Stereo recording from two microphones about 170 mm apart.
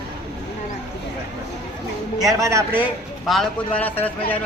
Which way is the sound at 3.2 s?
Centre (ahead or behind).